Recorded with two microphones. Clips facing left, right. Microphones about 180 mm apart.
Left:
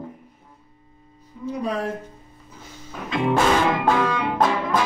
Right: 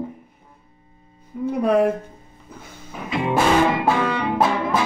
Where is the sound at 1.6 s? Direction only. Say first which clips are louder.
Right 9 dB; 60° right (ahead or behind).